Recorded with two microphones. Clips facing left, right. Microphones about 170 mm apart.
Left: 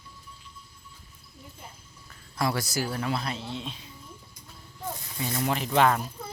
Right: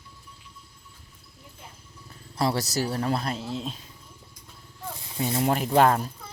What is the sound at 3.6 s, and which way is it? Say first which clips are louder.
Speech: right 4 dB; 40° right (ahead or behind).